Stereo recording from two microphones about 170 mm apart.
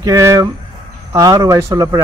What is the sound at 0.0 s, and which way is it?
Speech, 15° right (ahead or behind).